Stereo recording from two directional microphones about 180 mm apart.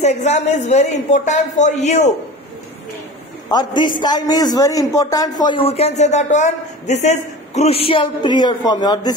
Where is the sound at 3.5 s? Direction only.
25° left (ahead or behind).